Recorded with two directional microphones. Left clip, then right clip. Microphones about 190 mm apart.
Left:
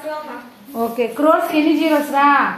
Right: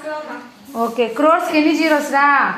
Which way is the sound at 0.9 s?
15° right (ahead or behind).